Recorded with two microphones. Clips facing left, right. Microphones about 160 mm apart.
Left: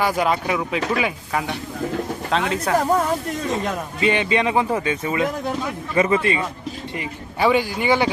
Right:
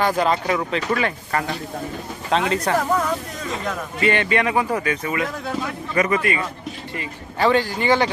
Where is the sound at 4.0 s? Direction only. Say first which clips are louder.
Even; 20° left (ahead or behind).